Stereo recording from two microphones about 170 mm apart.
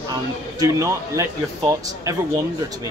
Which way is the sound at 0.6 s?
20° right (ahead or behind).